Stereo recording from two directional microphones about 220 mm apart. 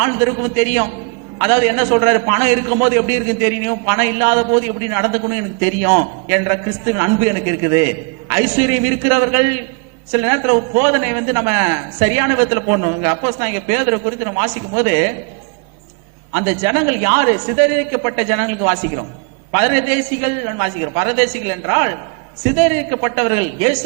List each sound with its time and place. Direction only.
0.0 s a man's voice: 20° right (ahead or behind)
16.3 s a man's voice: 15° right (ahead or behind)